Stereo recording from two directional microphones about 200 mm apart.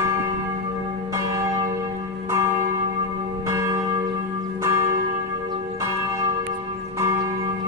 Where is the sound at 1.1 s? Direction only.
15° right (ahead or behind).